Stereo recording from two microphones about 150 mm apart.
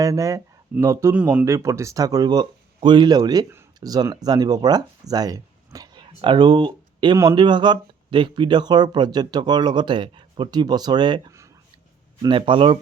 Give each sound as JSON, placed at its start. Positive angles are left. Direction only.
{"t": 0.0, "sound": "speech", "side_deg": -20}
{"t": 1.1, "sound": "speech", "side_deg": -10}
{"t": 1.5, "sound": "speech", "side_deg": -20}
{"t": 11.3, "sound": "a sound", "side_deg": -20}
{"t": 12.2, "sound": "a man's voice", "side_deg": -35}